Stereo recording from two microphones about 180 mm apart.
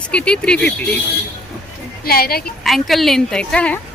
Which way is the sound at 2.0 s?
55° left (ahead or behind).